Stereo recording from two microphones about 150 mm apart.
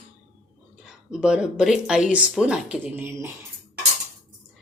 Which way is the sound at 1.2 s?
5° right (ahead or behind).